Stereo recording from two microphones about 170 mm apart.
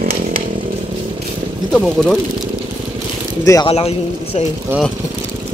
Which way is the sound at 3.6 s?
35° left (ahead or behind).